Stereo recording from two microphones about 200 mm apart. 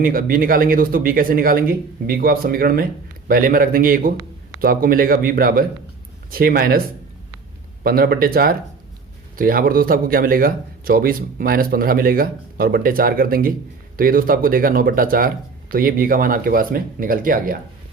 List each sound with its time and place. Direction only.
0.0 s speech: 45° right (ahead or behind)
7.9 s speech: 50° right (ahead or behind)